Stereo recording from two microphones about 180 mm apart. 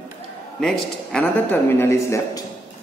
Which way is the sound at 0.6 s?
5° left (ahead or behind).